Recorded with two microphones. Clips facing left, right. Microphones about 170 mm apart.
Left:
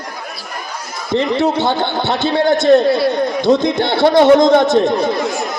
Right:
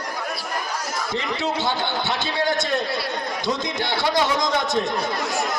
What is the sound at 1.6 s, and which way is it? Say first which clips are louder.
Speech: left 7 dB; 55° left (ahead or behind).